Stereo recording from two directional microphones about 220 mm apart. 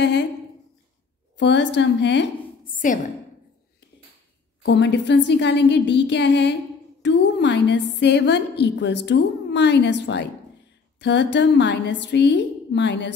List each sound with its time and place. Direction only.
0.0 s a woman's voice: 50° left (ahead or behind)
1.4 s a woman's voice: 55° left (ahead or behind)
2.8 s a woman's voice: 35° left (ahead or behind)
4.6 s a woman's voice: 50° left (ahead or behind)